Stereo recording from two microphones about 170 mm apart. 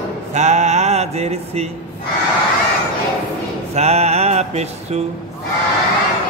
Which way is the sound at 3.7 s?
40° right (ahead or behind).